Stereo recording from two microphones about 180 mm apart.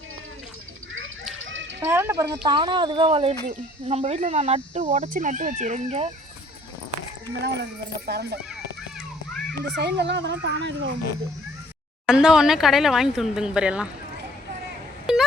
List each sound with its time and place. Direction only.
1.4 s children playing: 90° right
1.8 s speech: 10° right (ahead or behind); by 6.1 s 40° right (ahead or behind)
7.4 s speech: 65° right (ahead or behind)
9.6 s speech: 70° right (ahead or behind)
12.0 s speech: 5° right (ahead or behind)
15.1 s a sound: 5° right (ahead or behind)